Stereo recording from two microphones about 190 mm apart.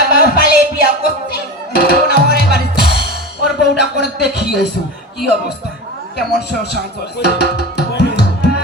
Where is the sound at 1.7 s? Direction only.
55° left (ahead or behind).